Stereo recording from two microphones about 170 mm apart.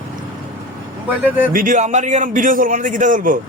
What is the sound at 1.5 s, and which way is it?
A man's voice, 50° right (ahead or behind).